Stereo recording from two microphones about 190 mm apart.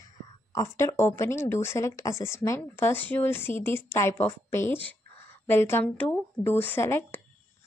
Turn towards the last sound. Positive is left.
turn(degrees=10)  # may be behind; listen again after turning